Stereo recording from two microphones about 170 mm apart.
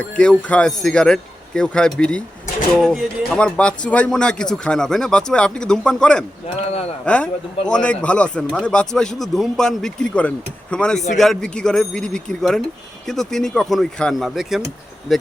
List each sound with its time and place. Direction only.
0.0 s speech: 5° left (ahead or behind)
6.7 s speech: 35° left (ahead or behind)
7.0 s speech: 5° left (ahead or behind)